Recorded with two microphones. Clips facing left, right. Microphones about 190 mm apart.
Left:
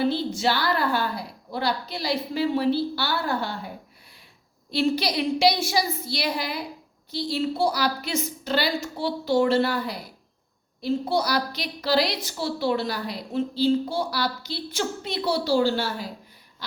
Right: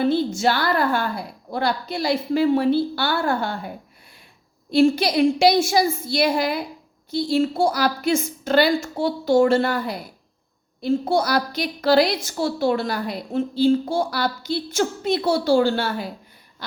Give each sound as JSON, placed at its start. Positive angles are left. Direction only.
{"t": 0.0, "sound": "a woman's voice", "side_deg": -50}
{"t": 4.7, "sound": "a woman's voice", "side_deg": -50}